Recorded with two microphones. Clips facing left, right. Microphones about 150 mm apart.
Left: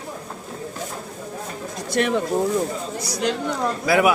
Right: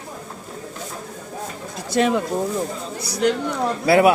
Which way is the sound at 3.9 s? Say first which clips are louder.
Right 4 dB; 30° right (ahead or behind).